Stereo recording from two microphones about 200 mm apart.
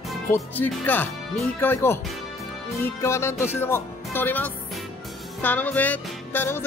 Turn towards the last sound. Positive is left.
turn(degrees=10)  # may be behind; listen again after turning